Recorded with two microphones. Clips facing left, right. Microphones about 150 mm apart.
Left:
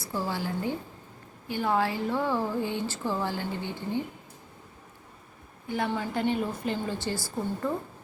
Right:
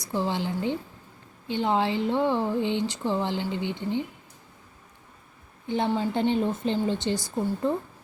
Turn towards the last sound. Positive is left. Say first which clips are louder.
# right 4 dB
turn(degrees=-20)  # may be behind; listen again after turning